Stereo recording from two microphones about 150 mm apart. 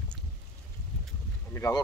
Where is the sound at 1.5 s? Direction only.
20° left (ahead or behind).